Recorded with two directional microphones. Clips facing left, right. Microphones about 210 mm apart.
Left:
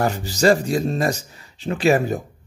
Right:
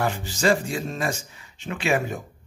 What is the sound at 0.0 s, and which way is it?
Speech, 40° left (ahead or behind).